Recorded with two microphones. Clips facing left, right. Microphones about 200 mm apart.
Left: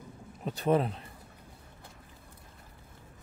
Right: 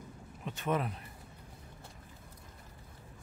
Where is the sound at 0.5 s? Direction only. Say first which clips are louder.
Left 7 dB; 35° left (ahead or behind).